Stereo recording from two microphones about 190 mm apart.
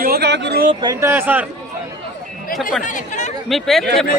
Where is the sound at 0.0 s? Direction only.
55° right (ahead or behind).